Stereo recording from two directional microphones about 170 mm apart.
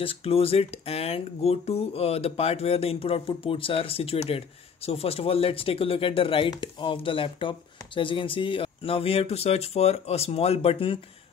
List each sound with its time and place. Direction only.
0.0 s speech: 35° left (ahead or behind)